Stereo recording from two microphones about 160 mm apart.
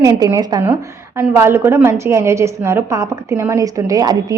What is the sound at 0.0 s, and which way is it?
A woman's voice, 20° right (ahead or behind).